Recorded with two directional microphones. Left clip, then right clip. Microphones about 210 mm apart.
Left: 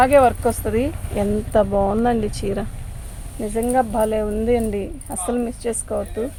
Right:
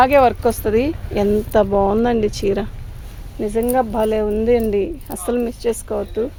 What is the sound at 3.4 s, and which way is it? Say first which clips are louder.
Speech: right 2 dB; 50° right (ahead or behind).